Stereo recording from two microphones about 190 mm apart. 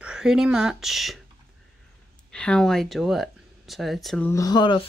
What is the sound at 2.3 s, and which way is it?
Speech, 5° left (ahead or behind).